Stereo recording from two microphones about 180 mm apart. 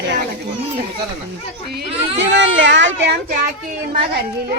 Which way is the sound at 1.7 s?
90° right.